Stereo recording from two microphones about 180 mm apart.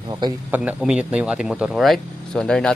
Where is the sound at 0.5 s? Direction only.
5° right (ahead or behind).